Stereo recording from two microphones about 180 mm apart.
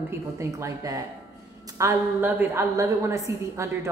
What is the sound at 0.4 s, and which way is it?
A woman's voice, 15° right (ahead or behind).